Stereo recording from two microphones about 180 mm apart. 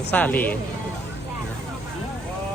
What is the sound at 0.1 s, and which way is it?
Speech, 10° left (ahead or behind).